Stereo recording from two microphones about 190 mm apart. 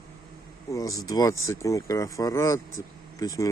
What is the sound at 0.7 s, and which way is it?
Speech, 15° left (ahead or behind).